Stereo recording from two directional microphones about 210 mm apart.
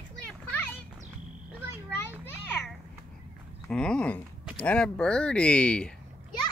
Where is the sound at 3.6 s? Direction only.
5° left (ahead or behind).